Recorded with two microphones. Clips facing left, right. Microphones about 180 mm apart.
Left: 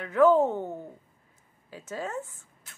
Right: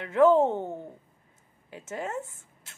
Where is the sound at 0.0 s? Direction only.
25° right (ahead or behind).